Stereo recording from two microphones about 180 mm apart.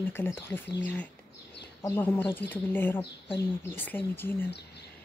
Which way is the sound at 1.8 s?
15° left (ahead or behind).